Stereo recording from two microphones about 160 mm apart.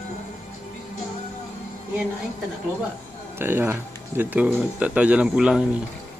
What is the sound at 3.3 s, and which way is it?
Speech, 15° right (ahead or behind).